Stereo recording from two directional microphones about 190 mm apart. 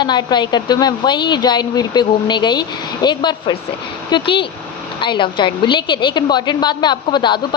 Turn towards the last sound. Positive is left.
turn(degrees=25)  # may be behind; listen again after turning